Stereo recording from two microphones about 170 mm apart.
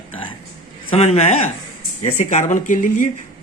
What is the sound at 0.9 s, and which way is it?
A man's voice, 35° left (ahead or behind).